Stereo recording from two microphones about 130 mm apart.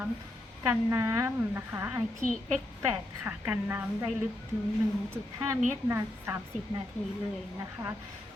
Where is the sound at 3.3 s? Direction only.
15° right (ahead or behind).